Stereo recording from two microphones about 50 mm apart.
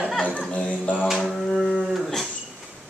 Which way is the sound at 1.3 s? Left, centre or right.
Centre.